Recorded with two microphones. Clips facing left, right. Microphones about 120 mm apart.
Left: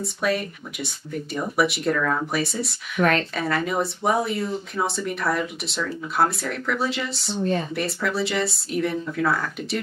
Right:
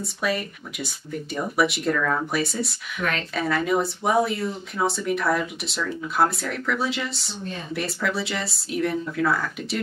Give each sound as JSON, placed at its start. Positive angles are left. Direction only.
{"t": 0.0, "sound": "speech", "side_deg": 0}
{"t": 3.0, "sound": "a woman's voice", "side_deg": 45}
{"t": 3.3, "sound": "speech", "side_deg": 0}